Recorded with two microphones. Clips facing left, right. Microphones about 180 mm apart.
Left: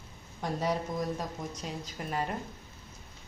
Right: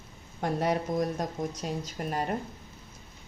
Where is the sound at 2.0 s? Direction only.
45° right (ahead or behind).